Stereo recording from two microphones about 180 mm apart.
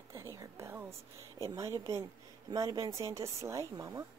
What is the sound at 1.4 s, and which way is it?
Speech, 15° right (ahead or behind).